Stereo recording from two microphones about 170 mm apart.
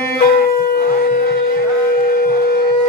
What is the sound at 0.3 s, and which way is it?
Shofar, 65° left (ahead or behind).